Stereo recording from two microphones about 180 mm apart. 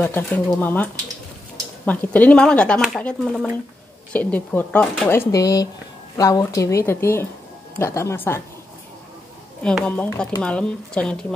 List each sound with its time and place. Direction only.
0.0 s speech: 10° left (ahead or behind)
1.9 s speech: 10° left (ahead or behind)
9.6 s speech: 5° left (ahead or behind)